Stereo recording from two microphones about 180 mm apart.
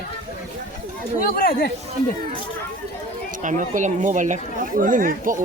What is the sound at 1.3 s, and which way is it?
Speech, 55° left (ahead or behind).